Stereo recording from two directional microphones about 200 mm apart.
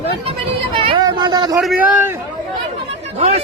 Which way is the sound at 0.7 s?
25° right (ahead or behind).